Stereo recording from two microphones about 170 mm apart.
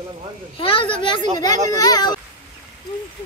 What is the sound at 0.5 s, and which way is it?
A child's voice, 30° left (ahead or behind).